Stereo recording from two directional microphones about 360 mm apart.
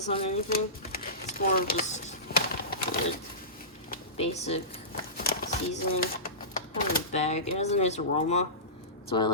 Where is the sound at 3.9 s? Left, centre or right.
Centre.